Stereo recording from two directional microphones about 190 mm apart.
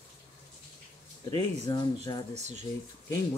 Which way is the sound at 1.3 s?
20° left (ahead or behind).